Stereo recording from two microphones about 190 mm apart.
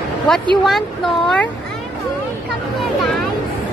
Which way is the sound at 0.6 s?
Centre (ahead or behind).